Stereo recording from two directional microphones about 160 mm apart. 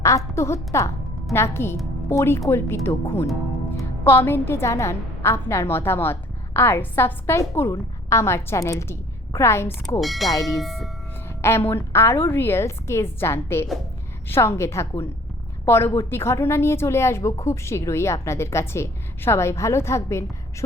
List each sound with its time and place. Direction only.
0.3 s a woman's voice: 15° left (ahead or behind)
10.0 s speech: centre (ahead or behind)
11.4 s a woman's voice: 15° left (ahead or behind)